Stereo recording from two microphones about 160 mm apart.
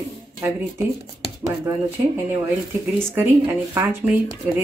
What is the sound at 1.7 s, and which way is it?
Speech, 15° right (ahead or behind).